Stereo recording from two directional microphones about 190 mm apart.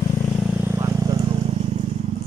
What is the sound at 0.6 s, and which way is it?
Vehicle, 15° right (ahead or behind).